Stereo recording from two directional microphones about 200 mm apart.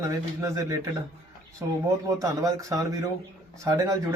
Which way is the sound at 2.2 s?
15° right (ahead or behind).